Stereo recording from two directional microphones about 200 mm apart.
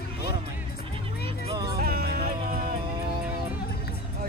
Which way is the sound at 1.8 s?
50° right (ahead or behind).